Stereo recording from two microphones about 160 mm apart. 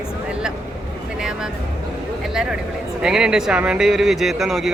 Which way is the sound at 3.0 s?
5° right (ahead or behind).